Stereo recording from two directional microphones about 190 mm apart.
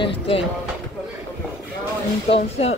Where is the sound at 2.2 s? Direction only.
30° left (ahead or behind).